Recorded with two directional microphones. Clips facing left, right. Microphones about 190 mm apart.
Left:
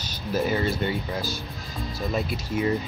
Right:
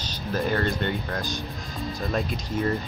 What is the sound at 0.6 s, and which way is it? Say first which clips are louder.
Speech: left 1 dB; centre (ahead or behind).